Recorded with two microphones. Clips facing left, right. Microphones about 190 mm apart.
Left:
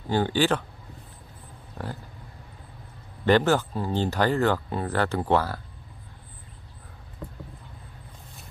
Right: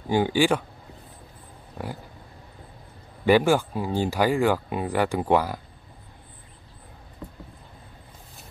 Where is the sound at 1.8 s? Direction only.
10° right (ahead or behind).